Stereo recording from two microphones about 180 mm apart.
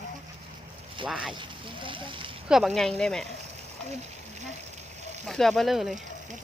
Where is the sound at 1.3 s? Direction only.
25° right (ahead or behind).